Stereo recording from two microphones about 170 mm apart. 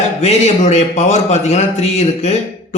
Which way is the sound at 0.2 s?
40° left (ahead or behind).